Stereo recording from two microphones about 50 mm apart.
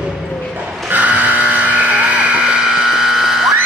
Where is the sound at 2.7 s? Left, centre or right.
Centre.